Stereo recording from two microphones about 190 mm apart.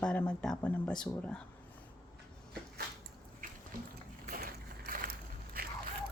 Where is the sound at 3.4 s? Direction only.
45° right (ahead or behind).